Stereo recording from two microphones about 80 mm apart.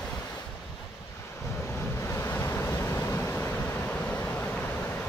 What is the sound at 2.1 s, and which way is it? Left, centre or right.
Waves, left.